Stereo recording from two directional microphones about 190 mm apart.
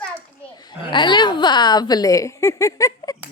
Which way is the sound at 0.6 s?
25° left (ahead or behind).